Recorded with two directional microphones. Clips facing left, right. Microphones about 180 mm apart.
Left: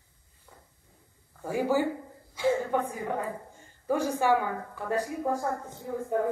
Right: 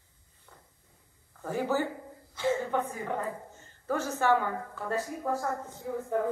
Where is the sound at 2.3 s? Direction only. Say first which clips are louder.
Left 2 dB; 10° left (ahead or behind).